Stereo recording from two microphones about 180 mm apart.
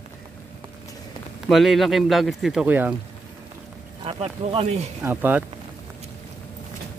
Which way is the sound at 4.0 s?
30° right (ahead or behind).